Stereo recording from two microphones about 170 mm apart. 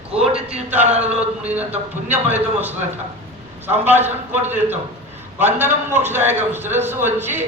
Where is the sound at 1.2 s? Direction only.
10° right (ahead or behind).